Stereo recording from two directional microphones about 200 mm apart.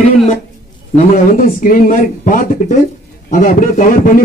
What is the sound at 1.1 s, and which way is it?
A man's voice, 45° left (ahead or behind).